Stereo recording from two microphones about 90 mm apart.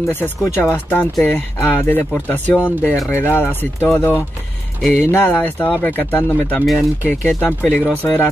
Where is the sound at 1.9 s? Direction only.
20° left (ahead or behind).